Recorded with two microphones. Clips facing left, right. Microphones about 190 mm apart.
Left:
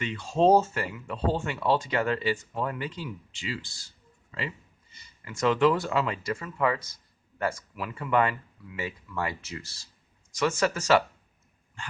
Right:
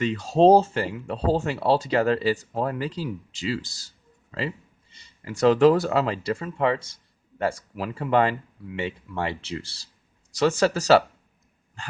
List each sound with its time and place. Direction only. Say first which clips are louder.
0.0 s speech: right 5 dB; 35° right (ahead or behind)